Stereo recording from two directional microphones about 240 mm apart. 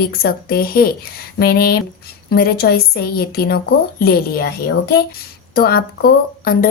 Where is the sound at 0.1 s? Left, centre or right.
Left.